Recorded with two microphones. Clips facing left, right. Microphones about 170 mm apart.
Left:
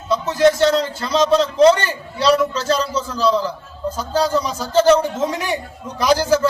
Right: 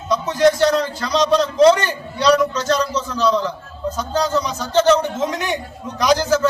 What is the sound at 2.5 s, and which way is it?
Speech, 30° left (ahead or behind).